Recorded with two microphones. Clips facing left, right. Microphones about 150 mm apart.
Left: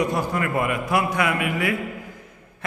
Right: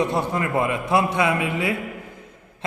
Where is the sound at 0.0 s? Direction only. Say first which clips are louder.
Right 1 dB; 25° right (ahead or behind).